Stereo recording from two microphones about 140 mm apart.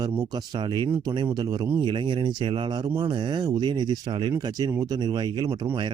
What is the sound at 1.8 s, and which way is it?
Speech, 35° right (ahead or behind).